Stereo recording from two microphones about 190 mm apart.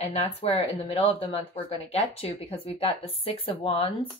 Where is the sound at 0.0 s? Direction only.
35° left (ahead or behind).